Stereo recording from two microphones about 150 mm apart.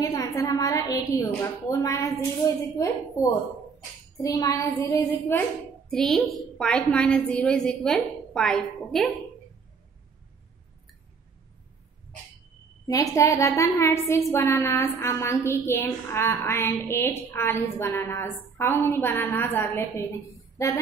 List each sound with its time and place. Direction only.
0.0 s a woman's voice: 25° left (ahead or behind)
5.9 s a woman's voice: 5° left (ahead or behind)
12.8 s a woman's voice: 25° left (ahead or behind)